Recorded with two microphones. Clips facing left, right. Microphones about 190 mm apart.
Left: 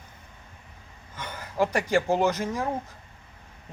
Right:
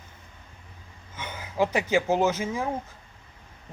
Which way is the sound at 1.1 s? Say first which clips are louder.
Even; 5° right (ahead or behind).